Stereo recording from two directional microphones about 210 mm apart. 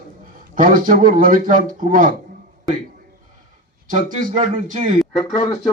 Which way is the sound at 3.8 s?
40° right (ahead or behind).